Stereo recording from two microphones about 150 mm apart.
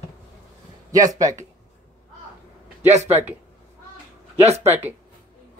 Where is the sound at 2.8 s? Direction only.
45° right (ahead or behind).